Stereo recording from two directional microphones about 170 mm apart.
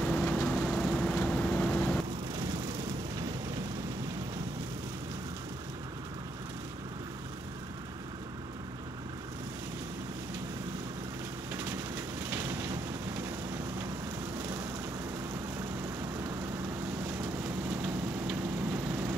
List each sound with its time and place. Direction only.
0.0 s vehicle: centre (ahead or behind)
12.3 s a sound: 15° right (ahead or behind)
17.6 s vehicle: 5° right (ahead or behind)